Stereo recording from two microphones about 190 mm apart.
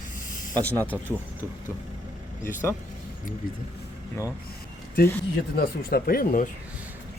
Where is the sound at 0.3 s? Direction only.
45° left (ahead or behind).